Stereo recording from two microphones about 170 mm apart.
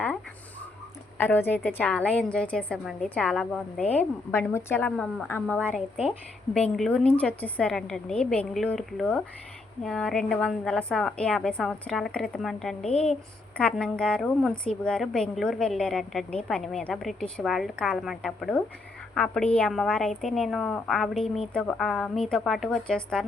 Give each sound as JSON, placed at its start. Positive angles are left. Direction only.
{"t": 1.2, "sound": "a woman's voice", "side_deg": 10}
{"t": 6.0, "sound": "a woman's voice", "side_deg": -5}
{"t": 12.9, "sound": "speech", "side_deg": 35}
{"t": 13.6, "sound": "a woman's voice", "side_deg": 5}